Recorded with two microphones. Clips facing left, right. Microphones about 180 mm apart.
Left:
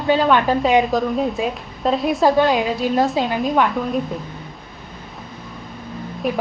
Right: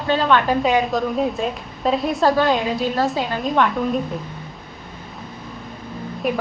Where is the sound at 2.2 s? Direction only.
10° left (ahead or behind).